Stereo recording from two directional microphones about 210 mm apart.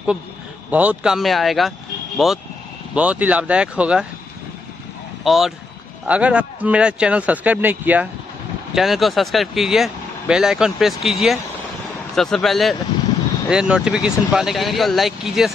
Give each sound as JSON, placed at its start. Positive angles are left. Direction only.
{"t": 0.7, "sound": "speech", "side_deg": -5}
{"t": 5.2, "sound": "speech", "side_deg": 0}